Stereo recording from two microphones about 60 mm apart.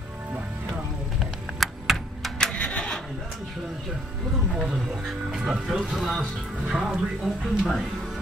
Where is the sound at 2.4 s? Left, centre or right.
Centre.